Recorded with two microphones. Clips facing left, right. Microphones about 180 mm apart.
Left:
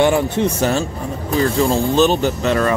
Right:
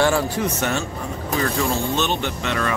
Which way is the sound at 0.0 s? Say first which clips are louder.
Left 4 dB; 20° left (ahead or behind).